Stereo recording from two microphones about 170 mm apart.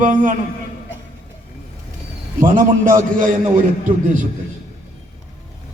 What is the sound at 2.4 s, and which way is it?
Speech, 50° right (ahead or behind).